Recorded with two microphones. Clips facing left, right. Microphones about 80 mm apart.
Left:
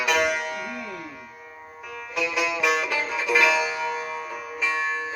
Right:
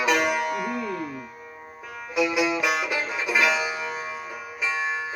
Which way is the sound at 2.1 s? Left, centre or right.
Centre.